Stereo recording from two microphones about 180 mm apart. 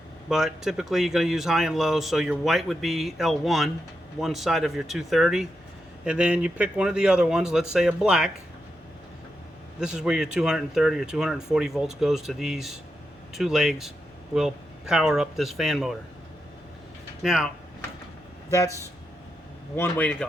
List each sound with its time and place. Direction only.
0.3 s speech: centre (ahead or behind)
9.8 s speech: 5° right (ahead or behind)
17.2 s speech: centre (ahead or behind)
18.5 s speech: 15° left (ahead or behind)